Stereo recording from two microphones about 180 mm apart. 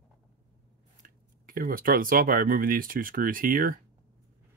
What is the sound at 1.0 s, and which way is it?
Speech, 50° right (ahead or behind).